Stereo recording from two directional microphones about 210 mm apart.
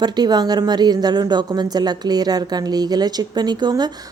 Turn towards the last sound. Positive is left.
turn(degrees=-20)  # may be behind; listen again after turning